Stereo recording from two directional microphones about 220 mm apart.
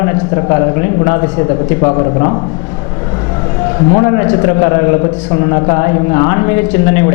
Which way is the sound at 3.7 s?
15° left (ahead or behind).